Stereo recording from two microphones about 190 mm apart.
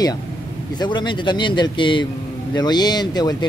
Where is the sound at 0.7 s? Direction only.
25° left (ahead or behind).